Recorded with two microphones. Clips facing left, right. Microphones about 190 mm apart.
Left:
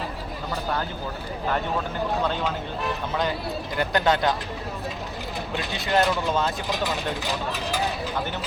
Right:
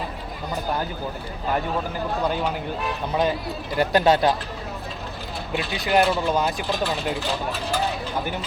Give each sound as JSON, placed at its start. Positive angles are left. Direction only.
{"t": 2.2, "sound": "speech", "side_deg": -10}
{"t": 5.8, "sound": "speech", "side_deg": -15}